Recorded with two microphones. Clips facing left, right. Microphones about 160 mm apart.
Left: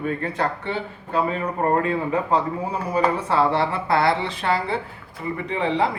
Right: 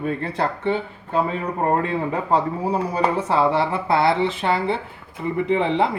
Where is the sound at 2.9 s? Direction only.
25° right (ahead or behind).